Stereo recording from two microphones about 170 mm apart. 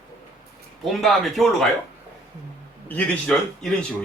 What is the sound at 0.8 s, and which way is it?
Speech, centre (ahead or behind).